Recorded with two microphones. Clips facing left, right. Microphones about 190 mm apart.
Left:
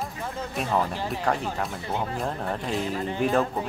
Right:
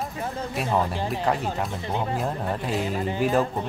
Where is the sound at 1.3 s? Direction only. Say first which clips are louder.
Right 1 dB; 5° right (ahead or behind).